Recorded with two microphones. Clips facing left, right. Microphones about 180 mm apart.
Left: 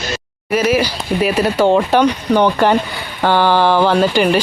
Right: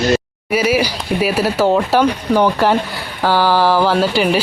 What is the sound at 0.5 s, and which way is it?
Speech, 10° right (ahead or behind).